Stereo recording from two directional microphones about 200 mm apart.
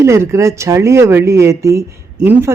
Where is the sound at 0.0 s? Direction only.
15° right (ahead or behind).